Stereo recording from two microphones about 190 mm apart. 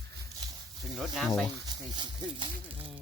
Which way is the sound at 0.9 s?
Centre (ahead or behind).